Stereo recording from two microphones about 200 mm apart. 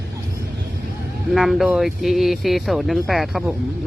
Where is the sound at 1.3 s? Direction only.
Centre (ahead or behind).